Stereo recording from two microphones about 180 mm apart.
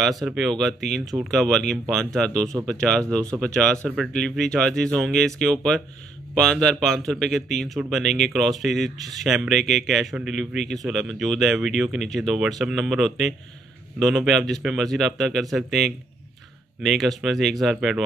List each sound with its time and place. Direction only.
0.0 s a man's voice: centre (ahead or behind)